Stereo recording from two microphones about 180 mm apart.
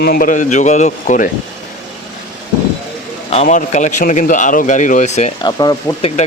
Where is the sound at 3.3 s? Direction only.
40° left (ahead or behind).